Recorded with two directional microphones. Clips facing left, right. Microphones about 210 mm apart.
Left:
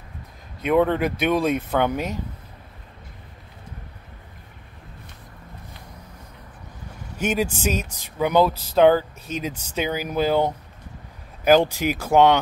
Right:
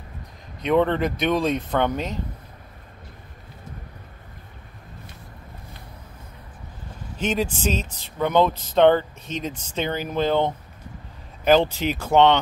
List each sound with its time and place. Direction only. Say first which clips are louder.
0.6 s speech: left 1 dB; 5° left (ahead or behind)
7.2 s speech: left 1 dB; 10° left (ahead or behind)